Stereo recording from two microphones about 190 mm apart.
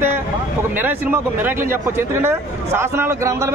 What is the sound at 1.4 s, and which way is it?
A man's voice, 10° right (ahead or behind).